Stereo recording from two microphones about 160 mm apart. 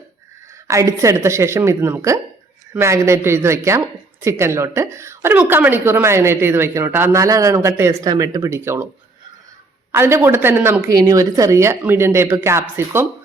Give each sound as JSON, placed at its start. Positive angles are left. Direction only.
{"t": 0.7, "sound": "a woman's voice", "side_deg": -20}
{"t": 9.9, "sound": "a woman's voice", "side_deg": -15}